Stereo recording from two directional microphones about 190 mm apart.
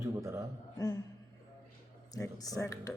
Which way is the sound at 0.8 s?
20° left (ahead or behind).